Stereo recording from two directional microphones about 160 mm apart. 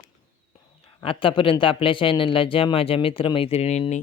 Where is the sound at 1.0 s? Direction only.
35° left (ahead or behind).